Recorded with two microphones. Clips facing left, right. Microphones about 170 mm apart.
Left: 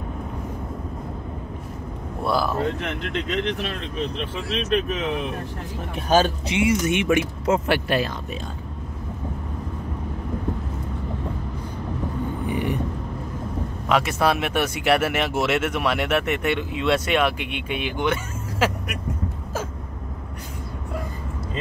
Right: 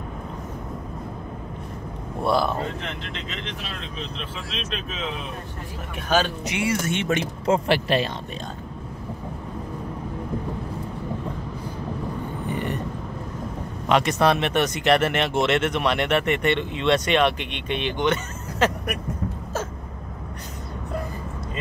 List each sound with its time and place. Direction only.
2.2 s speech: centre (ahead or behind)
2.8 s speech: 60° left (ahead or behind)
6.0 s speech: 40° left (ahead or behind)
6.5 s speech: 20° left (ahead or behind); by 8.0 s centre (ahead or behind)
12.4 s a sound: 10° left (ahead or behind)
13.8 s speech: 5° left (ahead or behind)